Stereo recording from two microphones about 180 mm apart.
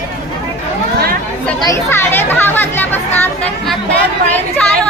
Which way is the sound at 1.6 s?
20° left (ahead or behind).